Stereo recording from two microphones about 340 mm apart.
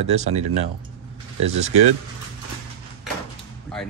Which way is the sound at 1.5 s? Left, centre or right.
Centre.